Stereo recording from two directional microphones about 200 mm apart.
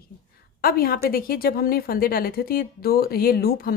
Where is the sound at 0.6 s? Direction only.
50° left (ahead or behind).